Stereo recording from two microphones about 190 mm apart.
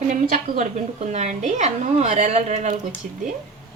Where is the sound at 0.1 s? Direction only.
40° right (ahead or behind).